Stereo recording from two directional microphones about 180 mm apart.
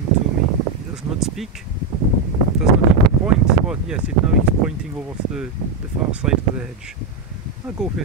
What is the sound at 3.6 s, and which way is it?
Speech, 5° right (ahead or behind).